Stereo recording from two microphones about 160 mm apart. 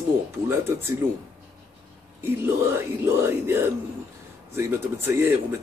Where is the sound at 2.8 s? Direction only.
15° right (ahead or behind).